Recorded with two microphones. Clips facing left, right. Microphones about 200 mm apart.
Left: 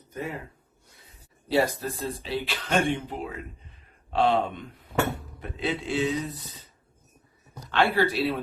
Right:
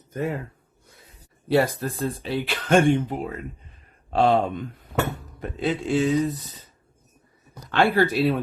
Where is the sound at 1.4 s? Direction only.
55° right (ahead or behind).